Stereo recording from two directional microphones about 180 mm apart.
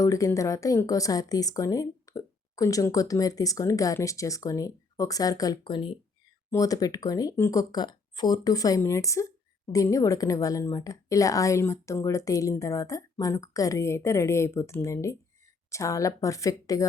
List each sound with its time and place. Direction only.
0.0 s speech: 15° left (ahead or behind)